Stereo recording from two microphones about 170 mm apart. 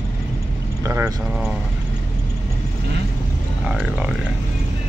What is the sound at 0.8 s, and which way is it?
Vehicle, 15° right (ahead or behind).